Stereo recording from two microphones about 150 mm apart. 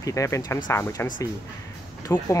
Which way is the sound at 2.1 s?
15° left (ahead or behind).